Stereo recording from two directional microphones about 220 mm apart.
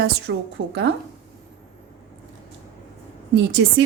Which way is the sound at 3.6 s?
55° right (ahead or behind).